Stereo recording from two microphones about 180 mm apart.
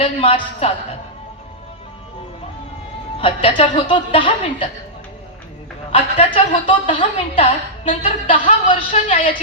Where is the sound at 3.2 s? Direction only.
30° left (ahead or behind).